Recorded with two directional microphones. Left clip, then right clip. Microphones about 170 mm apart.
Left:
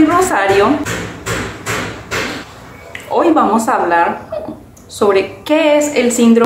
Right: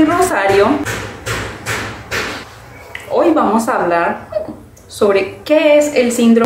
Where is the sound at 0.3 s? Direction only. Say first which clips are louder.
Even; 5° left (ahead or behind).